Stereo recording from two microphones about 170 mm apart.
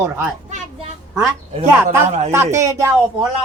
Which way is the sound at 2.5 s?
20° right (ahead or behind).